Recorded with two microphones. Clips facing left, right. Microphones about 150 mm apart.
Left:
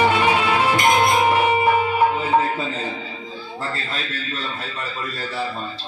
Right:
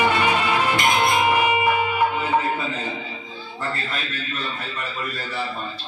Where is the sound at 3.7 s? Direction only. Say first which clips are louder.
Left 1 dB; 30° left (ahead or behind).